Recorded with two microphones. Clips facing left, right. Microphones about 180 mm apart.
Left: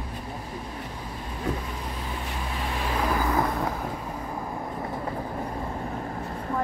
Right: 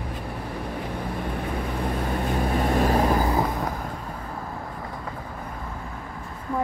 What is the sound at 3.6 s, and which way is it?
Vehicle, 10° left (ahead or behind).